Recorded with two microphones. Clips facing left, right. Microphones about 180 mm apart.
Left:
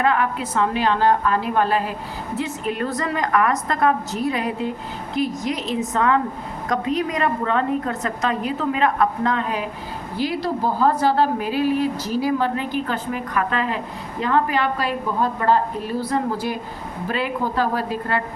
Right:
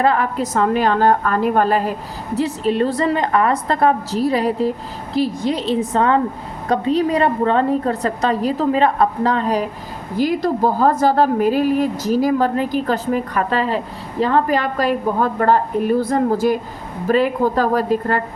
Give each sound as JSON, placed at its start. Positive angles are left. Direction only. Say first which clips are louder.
{"t": 0.0, "sound": "a woman's voice", "louder": "right 3 dB", "side_deg": -35}